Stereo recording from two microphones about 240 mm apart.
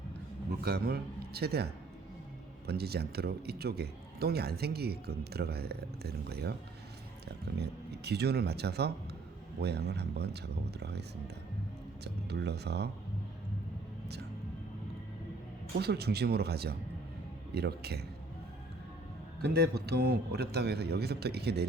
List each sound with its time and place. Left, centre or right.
0.6 s a man's voice: right
2.6 s a man's voice: right
12.0 s a man's voice: right
15.7 s speech: right
19.4 s a man's voice: right